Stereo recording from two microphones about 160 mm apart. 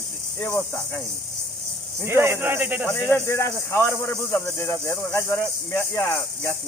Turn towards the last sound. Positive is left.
turn(degrees=15)  # may be behind; listen again after turning